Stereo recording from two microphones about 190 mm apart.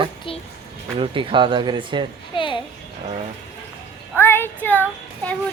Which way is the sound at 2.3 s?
25° left (ahead or behind).